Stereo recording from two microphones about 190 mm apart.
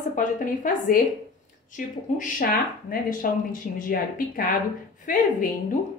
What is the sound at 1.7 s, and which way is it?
Speech, 45° left (ahead or behind).